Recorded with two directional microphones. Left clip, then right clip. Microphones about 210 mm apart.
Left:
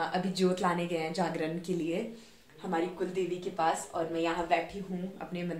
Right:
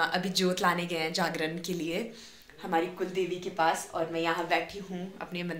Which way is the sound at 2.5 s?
20° right (ahead or behind).